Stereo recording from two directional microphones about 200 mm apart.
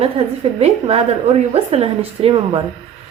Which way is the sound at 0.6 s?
30° right (ahead or behind).